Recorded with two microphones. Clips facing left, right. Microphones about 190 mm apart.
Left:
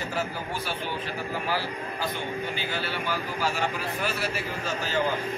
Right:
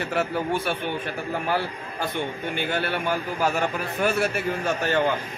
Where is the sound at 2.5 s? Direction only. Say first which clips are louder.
Right 5 dB; 55° right (ahead or behind).